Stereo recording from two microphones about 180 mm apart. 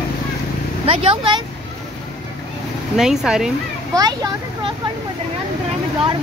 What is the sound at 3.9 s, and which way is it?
Speech, 20° right (ahead or behind).